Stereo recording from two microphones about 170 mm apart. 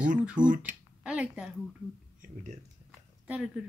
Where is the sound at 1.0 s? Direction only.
5° right (ahead or behind).